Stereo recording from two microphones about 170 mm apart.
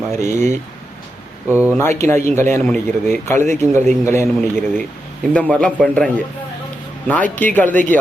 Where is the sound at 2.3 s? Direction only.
15° left (ahead or behind).